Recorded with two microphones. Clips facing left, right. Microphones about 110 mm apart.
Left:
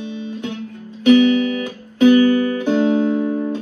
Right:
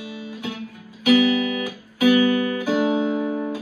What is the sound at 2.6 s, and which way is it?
Music, 10° right (ahead or behind).